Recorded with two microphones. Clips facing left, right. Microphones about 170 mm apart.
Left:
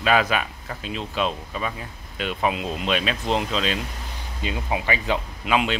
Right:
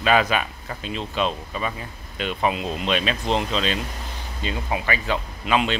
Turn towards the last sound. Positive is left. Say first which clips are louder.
# right 1 dB
turn(degrees=5)  # may be behind; listen again after turning